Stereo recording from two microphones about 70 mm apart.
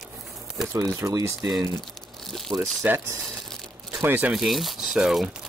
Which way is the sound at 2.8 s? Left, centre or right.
Right.